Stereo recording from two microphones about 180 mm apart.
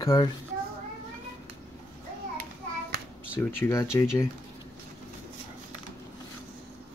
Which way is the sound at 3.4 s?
10° left (ahead or behind).